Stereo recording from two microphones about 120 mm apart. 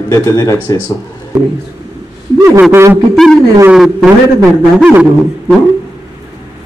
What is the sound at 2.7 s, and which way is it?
Speech, 20° right (ahead or behind).